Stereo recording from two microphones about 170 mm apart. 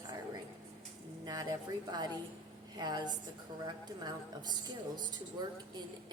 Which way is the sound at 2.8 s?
25° right (ahead or behind).